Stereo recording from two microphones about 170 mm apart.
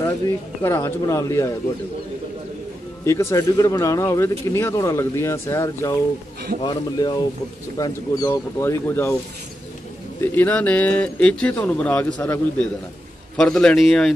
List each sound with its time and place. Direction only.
0.6 s speech: 15° left (ahead or behind)
3.1 s speech: 15° left (ahead or behind)
10.2 s a man's voice: 10° left (ahead or behind)